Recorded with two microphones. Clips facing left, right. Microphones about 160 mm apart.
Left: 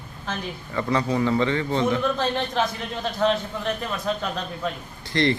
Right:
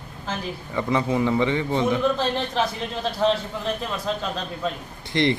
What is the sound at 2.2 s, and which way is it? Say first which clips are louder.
Speech: even; centre (ahead or behind).